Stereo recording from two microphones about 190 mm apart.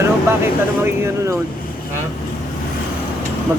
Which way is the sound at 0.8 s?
15° right (ahead or behind).